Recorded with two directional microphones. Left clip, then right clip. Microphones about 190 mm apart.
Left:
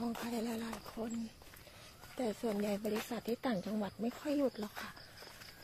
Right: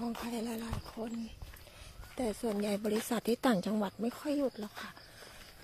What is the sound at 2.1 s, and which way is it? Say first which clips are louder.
Speech: right 2 dB; 15° right (ahead or behind).